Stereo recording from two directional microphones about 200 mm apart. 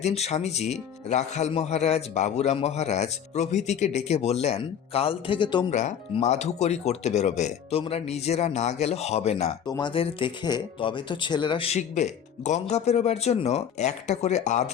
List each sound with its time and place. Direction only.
0.0 s speech: 35° left (ahead or behind)
5.7 s speech: 35° left (ahead or behind)
9.6 s speech: 20° left (ahead or behind)